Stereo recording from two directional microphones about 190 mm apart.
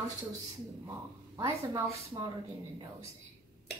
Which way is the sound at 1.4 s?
15° right (ahead or behind).